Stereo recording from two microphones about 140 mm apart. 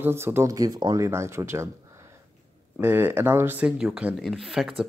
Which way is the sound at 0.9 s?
20° right (ahead or behind).